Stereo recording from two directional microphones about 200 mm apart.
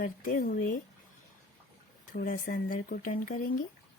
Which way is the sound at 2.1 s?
45° left (ahead or behind).